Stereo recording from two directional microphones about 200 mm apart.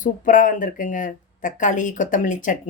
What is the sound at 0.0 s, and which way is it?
Speech, 40° left (ahead or behind).